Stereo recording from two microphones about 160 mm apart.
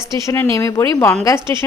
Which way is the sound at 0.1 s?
20° left (ahead or behind).